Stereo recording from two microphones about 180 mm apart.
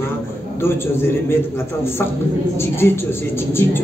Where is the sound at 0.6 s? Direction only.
15° left (ahead or behind).